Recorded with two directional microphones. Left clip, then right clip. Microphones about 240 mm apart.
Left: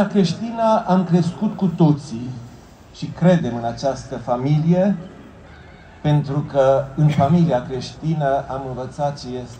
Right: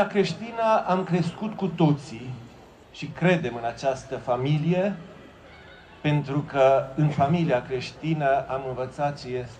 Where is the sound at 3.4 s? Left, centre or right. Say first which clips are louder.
Left 5 dB; right.